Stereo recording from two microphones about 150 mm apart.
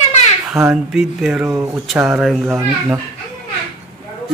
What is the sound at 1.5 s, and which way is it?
Speech, 20° right (ahead or behind).